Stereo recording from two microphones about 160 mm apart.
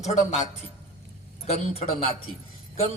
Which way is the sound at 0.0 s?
45° left (ahead or behind).